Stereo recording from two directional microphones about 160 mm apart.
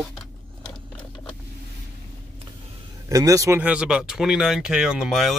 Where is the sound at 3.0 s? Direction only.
20° right (ahead or behind).